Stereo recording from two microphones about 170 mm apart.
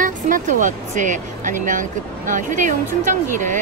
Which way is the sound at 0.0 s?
50° right (ahead or behind).